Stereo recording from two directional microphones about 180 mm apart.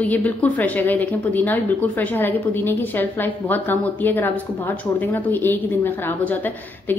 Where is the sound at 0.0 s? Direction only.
10° left (ahead or behind).